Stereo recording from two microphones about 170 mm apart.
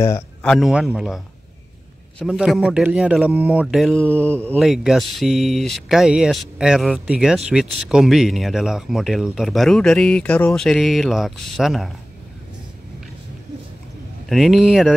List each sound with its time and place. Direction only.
0.4 s speech: 5° left (ahead or behind)
4.6 s speech: centre (ahead or behind)
14.3 s speech: centre (ahead or behind)